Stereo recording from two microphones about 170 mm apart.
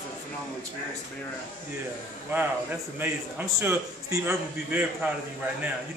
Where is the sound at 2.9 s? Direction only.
10° right (ahead or behind).